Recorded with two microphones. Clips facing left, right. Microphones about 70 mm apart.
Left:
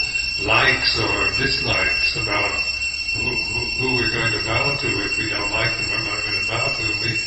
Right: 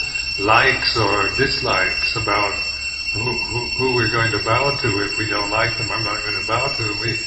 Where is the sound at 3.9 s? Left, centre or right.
Right.